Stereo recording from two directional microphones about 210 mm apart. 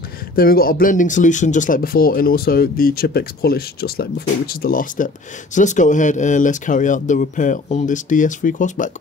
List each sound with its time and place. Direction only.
0.4 s speech: 45° left (ahead or behind)